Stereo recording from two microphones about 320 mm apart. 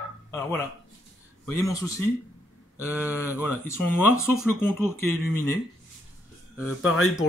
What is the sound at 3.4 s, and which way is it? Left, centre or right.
Speech, centre.